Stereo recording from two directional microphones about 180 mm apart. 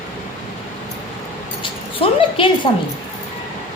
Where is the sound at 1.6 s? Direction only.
30° left (ahead or behind).